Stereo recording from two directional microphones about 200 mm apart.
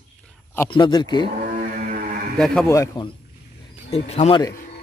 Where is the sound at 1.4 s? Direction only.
40° right (ahead or behind).